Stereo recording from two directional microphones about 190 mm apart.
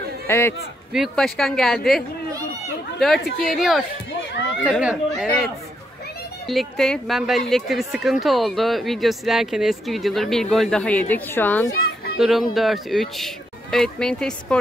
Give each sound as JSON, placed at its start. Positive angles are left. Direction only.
{"t": 0.3, "sound": "a man's voice", "side_deg": 15}
{"t": 0.9, "sound": "speech", "side_deg": 0}
{"t": 3.3, "sound": "speech", "side_deg": 50}
{"t": 3.5, "sound": "speech", "side_deg": 0}
{"t": 12.2, "sound": "speech", "side_deg": 0}